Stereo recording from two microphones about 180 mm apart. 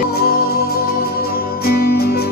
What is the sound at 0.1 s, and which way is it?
Music, 60° left (ahead or behind).